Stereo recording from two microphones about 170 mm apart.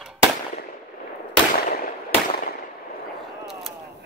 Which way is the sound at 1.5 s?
60° left (ahead or behind).